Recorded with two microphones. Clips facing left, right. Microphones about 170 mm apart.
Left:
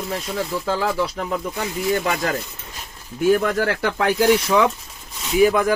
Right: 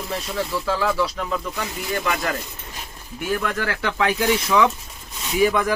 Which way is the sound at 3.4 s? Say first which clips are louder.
Left 4 dB; 35° left (ahead or behind).